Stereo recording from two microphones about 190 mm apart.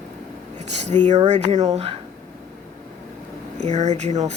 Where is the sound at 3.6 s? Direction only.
35° right (ahead or behind).